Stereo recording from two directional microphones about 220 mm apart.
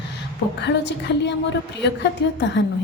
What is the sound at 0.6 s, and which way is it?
A woman's voice, 50° left (ahead or behind).